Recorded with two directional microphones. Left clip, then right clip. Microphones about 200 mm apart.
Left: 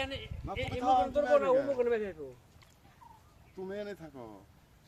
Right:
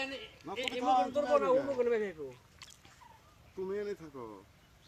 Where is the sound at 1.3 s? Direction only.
40° right (ahead or behind).